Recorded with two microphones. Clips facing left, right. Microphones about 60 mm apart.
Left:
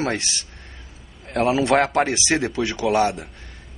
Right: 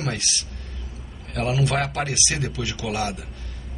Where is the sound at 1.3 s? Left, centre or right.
Left.